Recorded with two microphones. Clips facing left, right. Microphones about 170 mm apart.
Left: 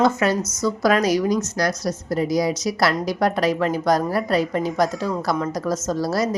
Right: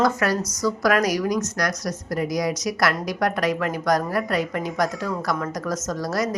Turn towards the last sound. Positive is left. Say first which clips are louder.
# left 3 dB
turn(degrees=30)  # may be behind; listen again after turning